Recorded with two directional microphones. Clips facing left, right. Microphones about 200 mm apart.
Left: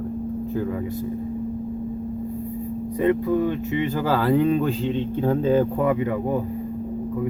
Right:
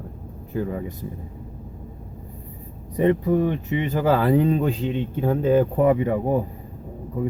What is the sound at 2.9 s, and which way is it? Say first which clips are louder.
Speech: right 1 dB; 20° right (ahead or behind).